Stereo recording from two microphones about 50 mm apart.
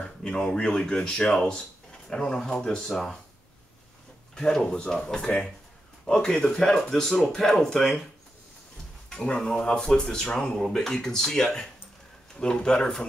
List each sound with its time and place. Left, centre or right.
0.2 s speech: centre
4.4 s speech: centre
9.1 s speech: centre